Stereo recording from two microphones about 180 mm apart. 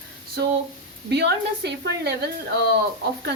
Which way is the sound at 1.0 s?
70° right (ahead or behind).